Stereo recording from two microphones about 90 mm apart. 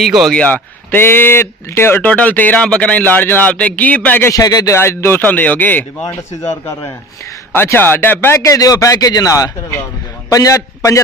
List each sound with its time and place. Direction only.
0.0 s a man's voice: centre (ahead or behind)
0.3 s speech: 10° left (ahead or behind)
0.9 s speech: 25° left (ahead or behind)
4.3 s a man's voice: 45° left (ahead or behind)
4.7 s speech: 30° left (ahead or behind)
7.5 s speech: 25° left (ahead or behind)
8.4 s a man's voice: 40° left (ahead or behind)